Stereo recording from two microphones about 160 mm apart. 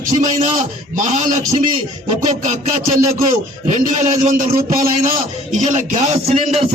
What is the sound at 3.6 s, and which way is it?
A man's voice, 50° right (ahead or behind).